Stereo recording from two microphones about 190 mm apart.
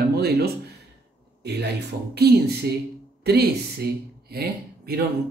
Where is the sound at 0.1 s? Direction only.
55° right (ahead or behind).